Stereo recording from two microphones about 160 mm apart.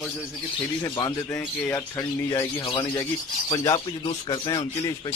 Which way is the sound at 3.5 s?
20° left (ahead or behind).